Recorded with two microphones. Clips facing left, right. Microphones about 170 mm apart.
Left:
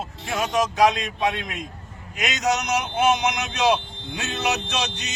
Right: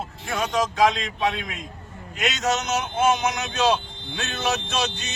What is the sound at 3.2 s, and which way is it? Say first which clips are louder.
Speech: even; 15° left (ahead or behind).